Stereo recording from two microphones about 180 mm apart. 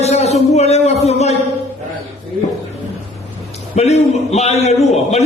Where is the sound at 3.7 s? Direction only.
40° left (ahead or behind).